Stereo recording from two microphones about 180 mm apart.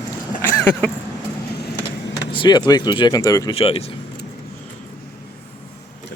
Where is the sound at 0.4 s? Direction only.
10° left (ahead or behind).